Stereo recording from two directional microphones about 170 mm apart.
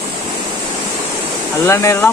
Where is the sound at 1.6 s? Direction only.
15° left (ahead or behind).